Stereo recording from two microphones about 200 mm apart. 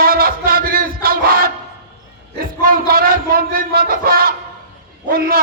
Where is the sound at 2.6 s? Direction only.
45° right (ahead or behind).